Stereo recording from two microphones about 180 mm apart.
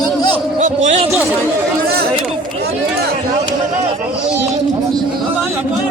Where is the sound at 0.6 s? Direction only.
40° right (ahead or behind).